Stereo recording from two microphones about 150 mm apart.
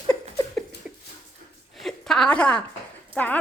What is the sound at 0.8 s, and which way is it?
Dog, 5° right (ahead or behind).